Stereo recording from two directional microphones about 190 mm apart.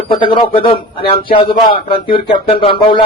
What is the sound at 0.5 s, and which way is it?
Speech, 30° left (ahead or behind).